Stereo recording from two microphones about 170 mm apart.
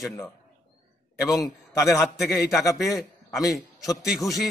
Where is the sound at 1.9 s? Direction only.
Centre (ahead or behind).